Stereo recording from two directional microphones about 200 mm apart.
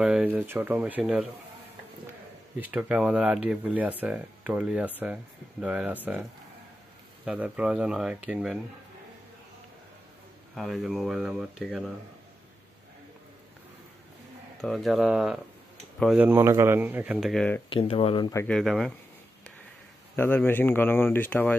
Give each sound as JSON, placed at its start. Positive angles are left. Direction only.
{"t": 0.0, "sound": "speech", "side_deg": -5}
{"t": 2.6, "sound": "speech", "side_deg": -5}
{"t": 7.2, "sound": "speech", "side_deg": -5}
{"t": 10.5, "sound": "speech", "side_deg": 0}
{"t": 14.6, "sound": "speech", "side_deg": 0}
{"t": 17.6, "sound": "speech", "side_deg": 30}
{"t": 18.4, "sound": "speech", "side_deg": 0}
{"t": 20.2, "sound": "speech", "side_deg": 10}